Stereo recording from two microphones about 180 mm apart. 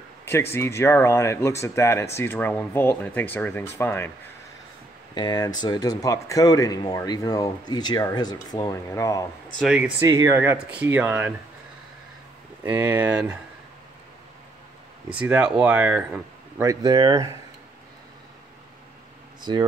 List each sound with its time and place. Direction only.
0.2 s speech: 15° left (ahead or behind)
5.1 s speech: 25° left (ahead or behind)
9.6 s speech: 5° right (ahead or behind)
12.6 s speech: 10° right (ahead or behind)
15.1 s speech: 10° right (ahead or behind)
16.6 s speech: 20° right (ahead or behind)